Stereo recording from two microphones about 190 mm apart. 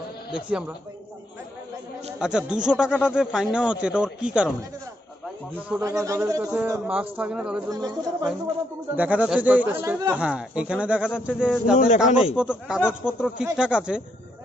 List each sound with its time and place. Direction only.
0.3 s speech: 5° right (ahead or behind)
2.1 s speech: 5° right (ahead or behind)
2.9 s speech: 10° left (ahead or behind)
3.2 s speech: 5° right (ahead or behind)
5.8 s speech: 15° right (ahead or behind)
7.7 s speech: 20° right (ahead or behind)
8.9 s speech: 10° right (ahead or behind)